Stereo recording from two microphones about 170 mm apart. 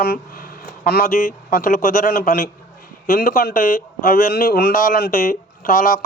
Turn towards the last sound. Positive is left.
turn(degrees=55)  # may be behind; listen again after turning